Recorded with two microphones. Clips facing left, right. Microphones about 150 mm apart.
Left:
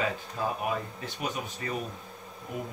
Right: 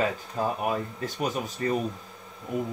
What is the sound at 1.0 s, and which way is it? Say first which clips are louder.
Speech: right 5 dB; 40° right (ahead or behind).